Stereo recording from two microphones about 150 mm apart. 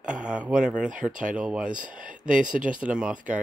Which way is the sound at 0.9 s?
60° right (ahead or behind).